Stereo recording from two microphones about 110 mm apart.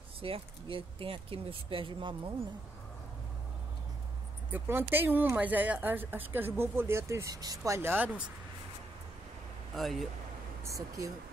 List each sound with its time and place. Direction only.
0.2 s speech: 55° right (ahead or behind)
4.5 s speech: 20° right (ahead or behind)
9.8 s speech: centre (ahead or behind)
10.6 s speech: 30° right (ahead or behind)